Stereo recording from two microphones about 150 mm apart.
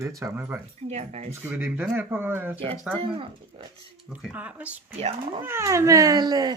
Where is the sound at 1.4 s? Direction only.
15° right (ahead or behind).